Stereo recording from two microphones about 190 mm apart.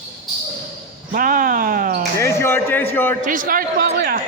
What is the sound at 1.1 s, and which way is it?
Speech, 45° right (ahead or behind).